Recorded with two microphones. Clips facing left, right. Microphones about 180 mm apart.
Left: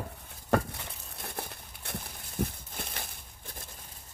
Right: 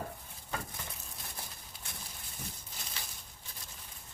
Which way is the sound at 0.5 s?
65° left (ahead or behind).